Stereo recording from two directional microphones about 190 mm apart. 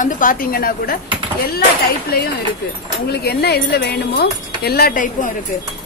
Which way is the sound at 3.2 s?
55° left (ahead or behind).